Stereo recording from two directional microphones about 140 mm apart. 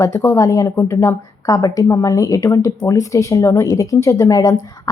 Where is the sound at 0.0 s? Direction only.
15° left (ahead or behind).